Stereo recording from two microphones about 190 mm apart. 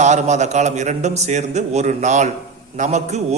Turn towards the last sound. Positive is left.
turn(degrees=-35)  # may be behind; listen again after turning